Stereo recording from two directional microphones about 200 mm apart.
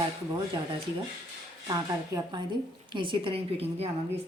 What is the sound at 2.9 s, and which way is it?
Speech, 25° right (ahead or behind).